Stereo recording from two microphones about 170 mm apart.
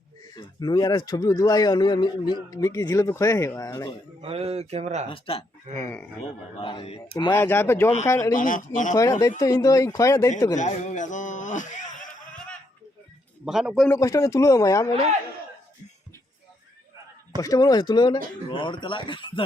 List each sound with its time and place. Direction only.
0.3 s a man's voice: 25° left (ahead or behind)
4.2 s speech: 35° right (ahead or behind)
5.0 s speech: 35° left (ahead or behind)
5.8 s speech: 10° left (ahead or behind)
6.6 s a man's voice: 30° left (ahead or behind)
7.3 s speech: 15° left (ahead or behind)
8.4 s a man's voice: 50° left (ahead or behind)
9.4 s a man's voice: 20° left (ahead or behind)
10.5 s a sound: 45° left (ahead or behind)
13.4 s a man's voice: 5° right (ahead or behind)
13.8 s a man's voice: 15° left (ahead or behind)
17.4 s a man's voice: 20° left (ahead or behind)